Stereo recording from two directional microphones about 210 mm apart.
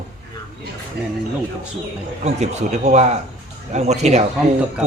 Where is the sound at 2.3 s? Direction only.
30° right (ahead or behind).